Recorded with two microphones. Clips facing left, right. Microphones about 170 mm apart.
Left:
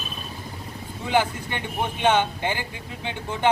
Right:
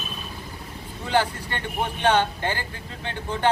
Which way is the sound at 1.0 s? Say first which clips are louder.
Left 1 dB; 15° left (ahead or behind).